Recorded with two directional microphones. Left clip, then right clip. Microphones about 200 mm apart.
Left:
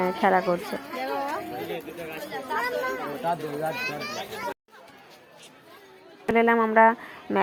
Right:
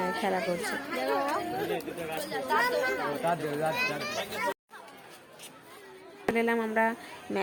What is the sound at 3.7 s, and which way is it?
Speech, 20° right (ahead or behind).